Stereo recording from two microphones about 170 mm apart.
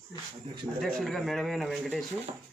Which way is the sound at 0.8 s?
Centre (ahead or behind).